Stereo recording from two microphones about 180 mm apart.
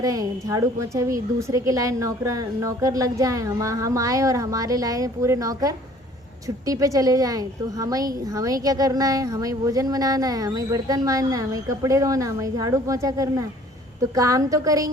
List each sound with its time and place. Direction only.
0.0 s a woman's voice: 20° right (ahead or behind)